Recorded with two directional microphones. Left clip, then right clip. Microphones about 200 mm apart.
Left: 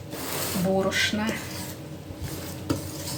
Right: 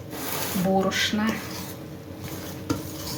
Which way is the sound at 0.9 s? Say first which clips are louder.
Even; 15° right (ahead or behind).